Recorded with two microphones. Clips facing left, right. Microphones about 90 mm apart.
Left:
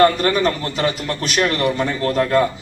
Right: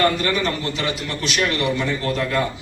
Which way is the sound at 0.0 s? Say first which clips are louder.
Left 5 dB; 40° left (ahead or behind).